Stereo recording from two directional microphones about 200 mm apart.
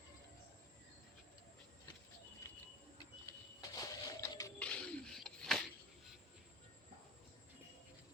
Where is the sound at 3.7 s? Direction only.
20° left (ahead or behind).